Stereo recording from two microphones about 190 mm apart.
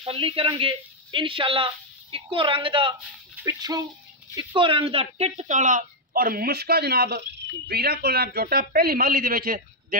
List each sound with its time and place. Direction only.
0.0 s a woman's voice: 30° right (ahead or behind); by 9.9 s 50° right (ahead or behind)